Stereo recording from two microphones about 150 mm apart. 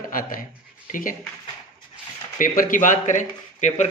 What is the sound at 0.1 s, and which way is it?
Speech, 65° left (ahead or behind).